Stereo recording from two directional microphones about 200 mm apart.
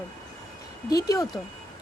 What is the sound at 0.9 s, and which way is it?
Speech, 20° left (ahead or behind).